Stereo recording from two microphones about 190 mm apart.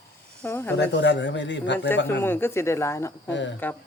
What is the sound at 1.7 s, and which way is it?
Speech, 10° left (ahead or behind).